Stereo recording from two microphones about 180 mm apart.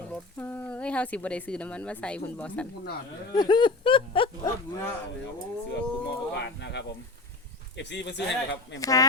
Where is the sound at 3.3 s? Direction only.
25° left (ahead or behind).